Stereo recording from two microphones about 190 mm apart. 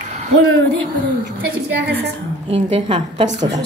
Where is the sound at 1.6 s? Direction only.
60° right (ahead or behind).